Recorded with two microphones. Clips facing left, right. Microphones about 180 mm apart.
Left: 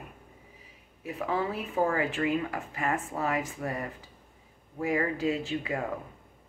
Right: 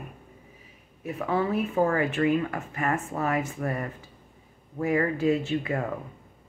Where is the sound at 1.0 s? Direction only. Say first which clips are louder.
Right 4 dB; 15° left (ahead or behind).